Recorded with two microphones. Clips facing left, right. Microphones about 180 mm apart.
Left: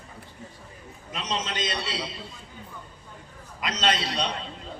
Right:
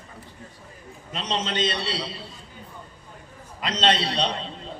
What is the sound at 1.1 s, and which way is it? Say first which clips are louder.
Speech: right 3 dB; 30° right (ahead or behind).